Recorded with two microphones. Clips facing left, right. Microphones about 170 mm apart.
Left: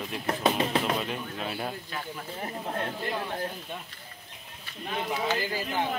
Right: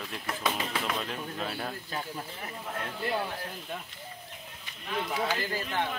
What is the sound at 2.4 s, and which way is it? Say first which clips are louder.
Speech: left 5 dB; 35° left (ahead or behind).